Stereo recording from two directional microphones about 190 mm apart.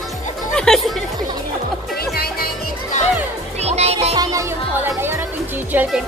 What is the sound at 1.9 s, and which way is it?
Music, 55° left (ahead or behind).